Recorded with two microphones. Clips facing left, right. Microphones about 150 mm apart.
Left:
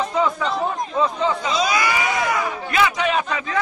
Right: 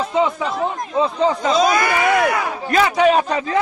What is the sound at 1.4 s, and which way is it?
Speech, 50° right (ahead or behind).